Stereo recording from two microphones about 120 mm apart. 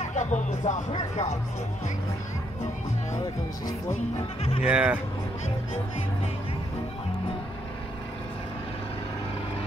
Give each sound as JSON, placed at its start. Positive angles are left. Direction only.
{"t": 0.0, "sound": "speech", "side_deg": 85}
{"t": 4.6, "sound": "speech", "side_deg": -10}